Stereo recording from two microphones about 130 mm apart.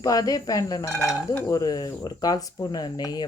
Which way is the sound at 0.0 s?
25° left (ahead or behind).